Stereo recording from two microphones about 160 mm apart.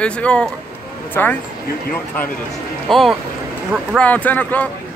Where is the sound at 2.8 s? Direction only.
Centre (ahead or behind).